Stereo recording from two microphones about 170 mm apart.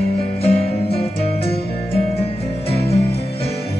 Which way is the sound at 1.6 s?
70° left (ahead or behind).